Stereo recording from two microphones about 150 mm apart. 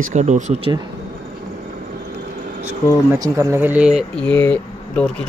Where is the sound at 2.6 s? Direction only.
15° right (ahead or behind).